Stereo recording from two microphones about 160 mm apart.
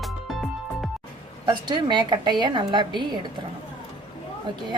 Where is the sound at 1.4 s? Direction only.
30° right (ahead or behind).